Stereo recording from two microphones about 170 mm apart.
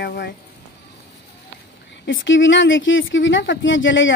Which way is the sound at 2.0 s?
90° left.